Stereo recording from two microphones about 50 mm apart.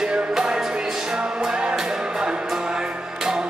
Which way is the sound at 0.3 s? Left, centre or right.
Centre.